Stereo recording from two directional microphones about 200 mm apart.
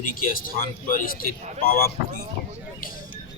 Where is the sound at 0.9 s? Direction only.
45° left (ahead or behind).